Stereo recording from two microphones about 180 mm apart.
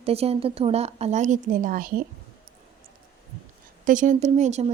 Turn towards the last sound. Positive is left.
turn(degrees=-40)  # may be behind; listen again after turning